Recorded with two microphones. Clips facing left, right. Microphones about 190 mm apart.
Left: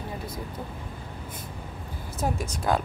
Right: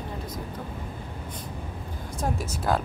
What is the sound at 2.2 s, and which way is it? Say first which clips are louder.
Speech: left 1 dB; 5° right (ahead or behind).